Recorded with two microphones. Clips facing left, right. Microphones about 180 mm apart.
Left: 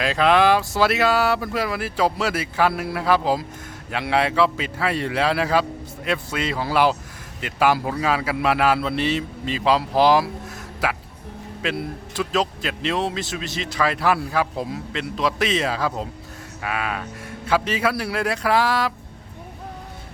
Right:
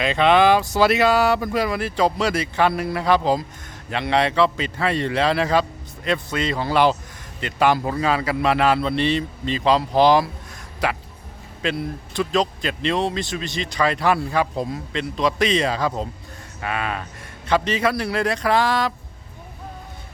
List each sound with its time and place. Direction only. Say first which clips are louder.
0.0 s a man's voice: right 1 dB; centre (ahead or behind)